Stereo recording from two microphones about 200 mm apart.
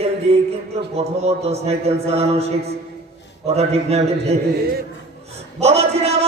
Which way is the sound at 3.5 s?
30° right (ahead or behind).